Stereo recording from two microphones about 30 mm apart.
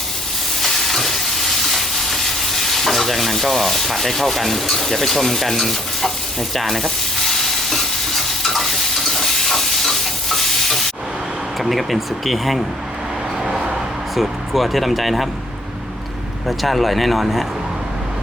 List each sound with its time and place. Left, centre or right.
0.6 s stir: centre
3.4 s sanding: centre
6.5 s stir: centre
11.6 s speech: centre
13.4 s a sound: centre
14.2 s speech: centre
16.5 s speech: centre